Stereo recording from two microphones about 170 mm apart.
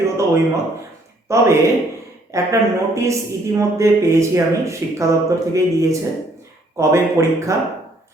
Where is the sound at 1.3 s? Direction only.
15° right (ahead or behind).